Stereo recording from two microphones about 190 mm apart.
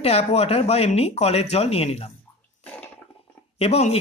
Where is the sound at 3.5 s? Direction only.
35° left (ahead or behind).